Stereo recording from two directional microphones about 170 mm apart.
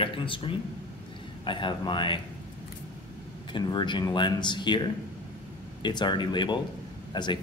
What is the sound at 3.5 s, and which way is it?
A man's voice, 25° left (ahead or behind).